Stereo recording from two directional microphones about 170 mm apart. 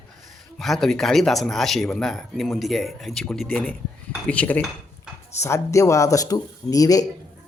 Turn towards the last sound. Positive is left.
turn(degrees=20)  # may be behind; listen again after turning